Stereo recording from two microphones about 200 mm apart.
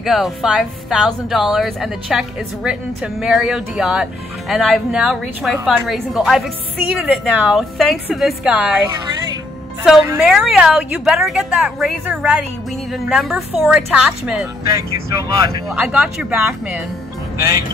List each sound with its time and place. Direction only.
0.0 s speech: centre (ahead or behind)
10.1 s speech: centre (ahead or behind)
14.7 s speech: 15° right (ahead or behind)
15.7 s speech: 5° right (ahead or behind)